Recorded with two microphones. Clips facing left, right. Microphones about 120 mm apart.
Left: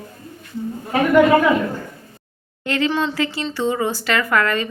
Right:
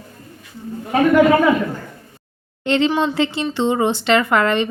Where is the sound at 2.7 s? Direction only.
25° right (ahead or behind).